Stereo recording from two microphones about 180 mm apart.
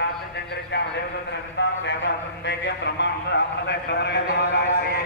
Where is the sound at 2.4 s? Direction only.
70° left (ahead or behind).